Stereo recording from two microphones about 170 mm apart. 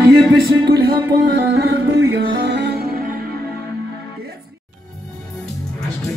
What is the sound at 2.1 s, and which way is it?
Music, 90° right.